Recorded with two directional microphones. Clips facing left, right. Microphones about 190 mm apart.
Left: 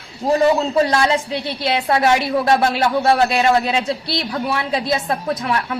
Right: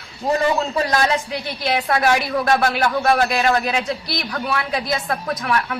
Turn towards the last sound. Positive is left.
turn(degrees=25)  # may be behind; listen again after turning